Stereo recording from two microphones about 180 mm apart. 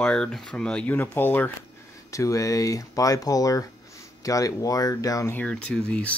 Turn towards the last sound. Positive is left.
turn(degrees=5)  # may be behind; listen again after turning